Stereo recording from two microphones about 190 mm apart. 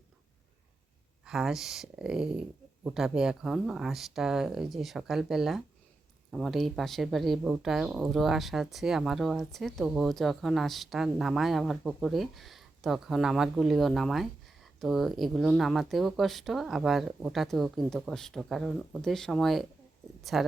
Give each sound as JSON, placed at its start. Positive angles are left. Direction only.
{"t": 1.2, "sound": "speech", "side_deg": -5}